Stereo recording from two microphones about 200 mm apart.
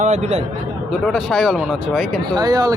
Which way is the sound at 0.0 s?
35° right (ahead or behind).